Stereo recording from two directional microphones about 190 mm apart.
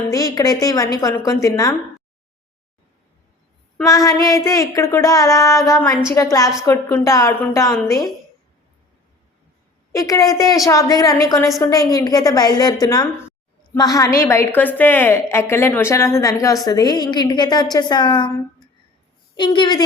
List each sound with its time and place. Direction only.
0.1 s a woman's voice: 20° left (ahead or behind)
3.8 s a woman's voice: 20° left (ahead or behind)
9.9 s a woman's voice: 15° left (ahead or behind)